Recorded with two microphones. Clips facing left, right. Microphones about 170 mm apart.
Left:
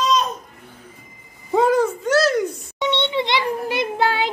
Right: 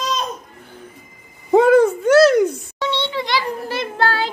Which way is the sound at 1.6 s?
60° right (ahead or behind).